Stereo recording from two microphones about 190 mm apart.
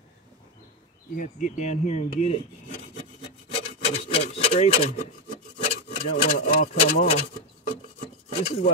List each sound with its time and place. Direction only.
1.1 s speech: 40° left (ahead or behind)
3.5 s rub: 30° left (ahead or behind)
5.6 s a sound: 35° left (ahead or behind)
6.4 s speech: 40° left (ahead or behind)
8.4 s speech: 35° left (ahead or behind)